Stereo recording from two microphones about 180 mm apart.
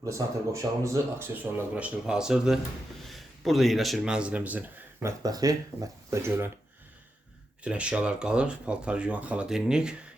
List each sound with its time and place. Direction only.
0.0 s speech: 15° right (ahead or behind)
5.2 s speech: 20° right (ahead or behind)
7.6 s speech: 5° right (ahead or behind)